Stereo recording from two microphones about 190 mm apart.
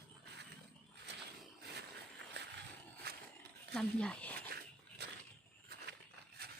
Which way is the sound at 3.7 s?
5° left (ahead or behind).